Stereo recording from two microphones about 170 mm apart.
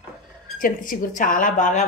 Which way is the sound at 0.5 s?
55° left (ahead or behind).